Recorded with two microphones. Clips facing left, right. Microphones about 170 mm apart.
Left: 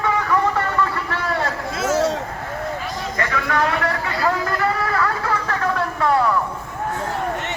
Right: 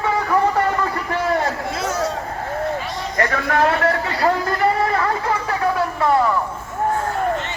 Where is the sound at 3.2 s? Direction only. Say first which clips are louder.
Right 3 dB; 45° right (ahead or behind); by 5.8 s 15° right (ahead or behind).